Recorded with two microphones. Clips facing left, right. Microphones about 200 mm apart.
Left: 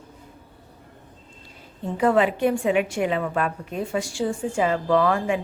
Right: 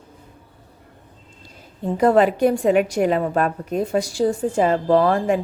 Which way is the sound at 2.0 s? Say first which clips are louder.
Right 4 dB; 40° right (ahead or behind).